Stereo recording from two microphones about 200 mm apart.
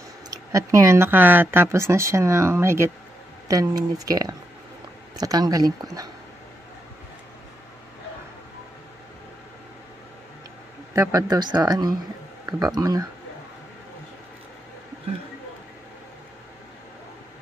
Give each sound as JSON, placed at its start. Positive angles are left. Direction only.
{"t": 0.3, "sound": "speech", "side_deg": -15}
{"t": 10.9, "sound": "speech", "side_deg": -15}